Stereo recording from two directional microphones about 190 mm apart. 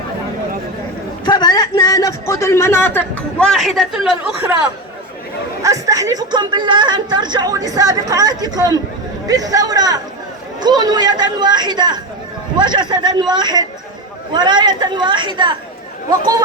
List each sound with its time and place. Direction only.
1.2 s a sound: 20° left (ahead or behind)
3.4 s a man's voice: centre (ahead or behind)
5.6 s speech: 15° right (ahead or behind)